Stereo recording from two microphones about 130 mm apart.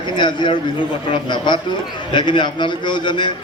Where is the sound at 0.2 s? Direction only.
35° left (ahead or behind).